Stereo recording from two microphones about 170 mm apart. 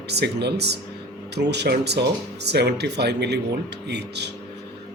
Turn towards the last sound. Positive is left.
turn(degrees=-80)